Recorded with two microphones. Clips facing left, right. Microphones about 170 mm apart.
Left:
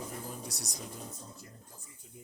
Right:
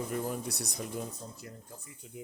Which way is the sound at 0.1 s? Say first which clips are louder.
Right 8 dB; 65° right (ahead or behind).